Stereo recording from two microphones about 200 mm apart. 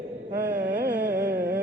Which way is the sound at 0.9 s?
10° right (ahead or behind).